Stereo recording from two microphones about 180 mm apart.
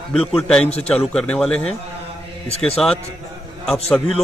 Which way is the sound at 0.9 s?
5° left (ahead or behind).